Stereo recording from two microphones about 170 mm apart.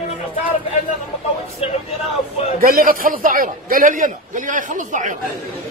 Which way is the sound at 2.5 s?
55° right (ahead or behind).